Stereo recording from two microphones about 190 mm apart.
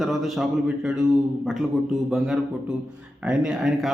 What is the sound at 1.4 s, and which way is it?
A man's voice, centre (ahead or behind).